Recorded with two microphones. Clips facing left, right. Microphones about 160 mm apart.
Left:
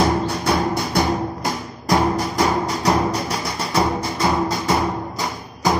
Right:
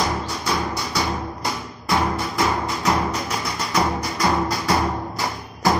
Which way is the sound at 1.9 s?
35° left (ahead or behind).